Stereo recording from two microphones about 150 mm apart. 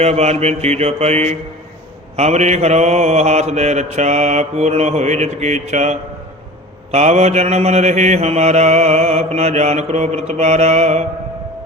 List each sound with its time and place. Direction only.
0.0 s mantra: 45° right (ahead or behind)